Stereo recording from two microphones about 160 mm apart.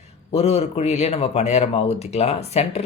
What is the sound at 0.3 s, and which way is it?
Speech, 40° left (ahead or behind).